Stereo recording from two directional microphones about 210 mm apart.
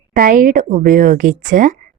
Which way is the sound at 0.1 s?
40° right (ahead or behind).